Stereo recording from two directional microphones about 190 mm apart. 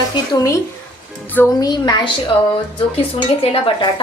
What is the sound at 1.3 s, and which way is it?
Speech, 10° left (ahead or behind).